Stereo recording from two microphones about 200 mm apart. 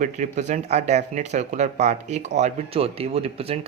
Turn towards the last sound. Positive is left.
turn(degrees=-30)  # may be behind; listen again after turning